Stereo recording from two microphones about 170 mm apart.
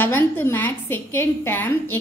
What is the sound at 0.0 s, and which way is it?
A woman's voice, 15° left (ahead or behind).